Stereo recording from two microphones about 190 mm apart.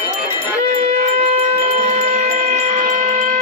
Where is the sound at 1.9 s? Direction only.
40° right (ahead or behind).